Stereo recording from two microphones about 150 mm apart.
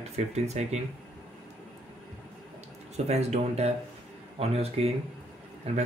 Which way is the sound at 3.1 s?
45° right (ahead or behind).